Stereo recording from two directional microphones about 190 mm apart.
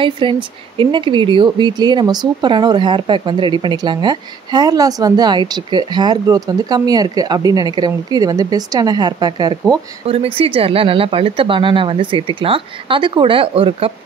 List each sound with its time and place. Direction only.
0.0 s speech: 25° right (ahead or behind)